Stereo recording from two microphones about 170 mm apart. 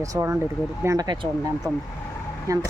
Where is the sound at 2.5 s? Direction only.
20° right (ahead or behind).